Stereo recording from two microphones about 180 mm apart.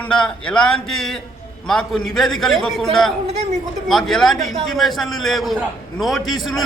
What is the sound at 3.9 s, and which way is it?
Speech, centre (ahead or behind).